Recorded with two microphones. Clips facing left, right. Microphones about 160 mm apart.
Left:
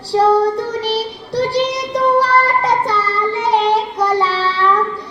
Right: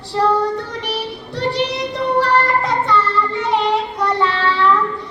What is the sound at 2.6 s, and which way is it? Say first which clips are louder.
Child singing: left 1 dB; 35° left (ahead or behind).